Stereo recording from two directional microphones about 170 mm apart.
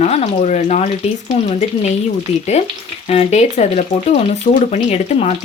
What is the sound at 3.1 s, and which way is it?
Speech, 40° left (ahead or behind).